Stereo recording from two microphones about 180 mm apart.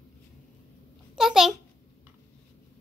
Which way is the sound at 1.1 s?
Centre (ahead or behind).